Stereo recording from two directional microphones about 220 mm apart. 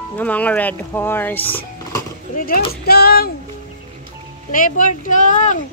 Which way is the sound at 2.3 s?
40° left (ahead or behind).